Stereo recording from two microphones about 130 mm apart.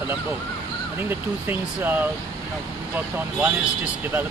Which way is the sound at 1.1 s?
15° right (ahead or behind).